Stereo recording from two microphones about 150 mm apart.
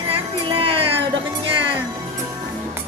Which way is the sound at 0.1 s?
40° right (ahead or behind).